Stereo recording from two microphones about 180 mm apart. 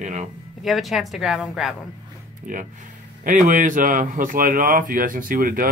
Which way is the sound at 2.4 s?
45° right (ahead or behind).